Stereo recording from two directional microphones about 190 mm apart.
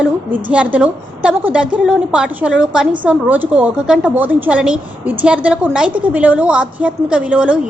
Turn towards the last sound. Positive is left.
turn(degrees=-5)  # may be behind; listen again after turning